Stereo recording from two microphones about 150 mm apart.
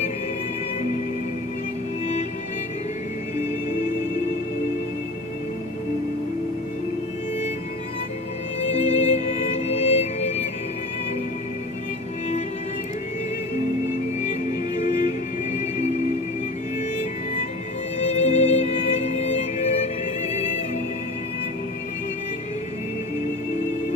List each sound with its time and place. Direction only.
8.6 s music: 50° left (ahead or behind)
17.9 s music: 50° left (ahead or behind)